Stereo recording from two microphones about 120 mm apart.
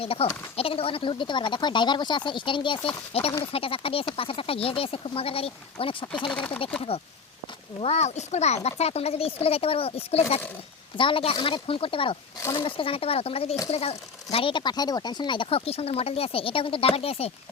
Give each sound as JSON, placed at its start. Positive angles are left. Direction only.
{"t": 0.0, "sound": "speech", "side_deg": 55}
{"t": 6.3, "sound": "speech", "side_deg": 10}
{"t": 7.8, "sound": "speech", "side_deg": 60}
{"t": 12.4, "sound": "speech", "side_deg": 25}
{"t": 12.6, "sound": "speech", "side_deg": 50}